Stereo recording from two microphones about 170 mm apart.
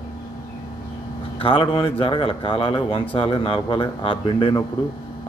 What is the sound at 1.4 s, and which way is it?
Speech, 30° left (ahead or behind).